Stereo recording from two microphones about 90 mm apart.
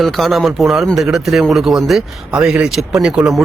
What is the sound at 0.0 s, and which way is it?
Speech, centre (ahead or behind).